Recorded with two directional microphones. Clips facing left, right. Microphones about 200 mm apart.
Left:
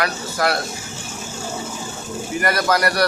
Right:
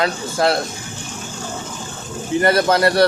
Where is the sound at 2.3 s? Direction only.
25° right (ahead or behind).